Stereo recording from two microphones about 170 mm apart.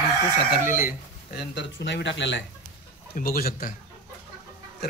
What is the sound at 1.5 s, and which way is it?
Speech, 90° left.